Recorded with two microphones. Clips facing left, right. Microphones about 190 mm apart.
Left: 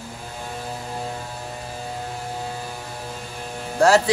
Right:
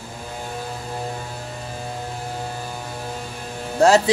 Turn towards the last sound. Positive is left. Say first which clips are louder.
# right 2 dB
turn(degrees=-20)  # may be behind; listen again after turning